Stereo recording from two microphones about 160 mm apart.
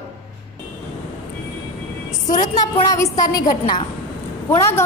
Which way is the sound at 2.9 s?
20° left (ahead or behind).